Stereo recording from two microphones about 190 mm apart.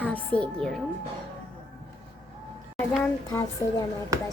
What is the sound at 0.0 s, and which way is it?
Speech, 10° left (ahead or behind).